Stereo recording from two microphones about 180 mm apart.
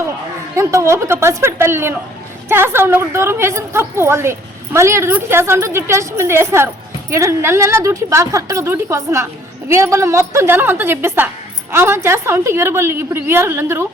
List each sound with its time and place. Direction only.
0.5 s a woman's voice: 15° right (ahead or behind)